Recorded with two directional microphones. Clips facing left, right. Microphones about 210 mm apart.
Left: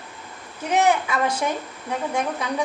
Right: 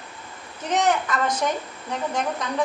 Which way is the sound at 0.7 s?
10° left (ahead or behind).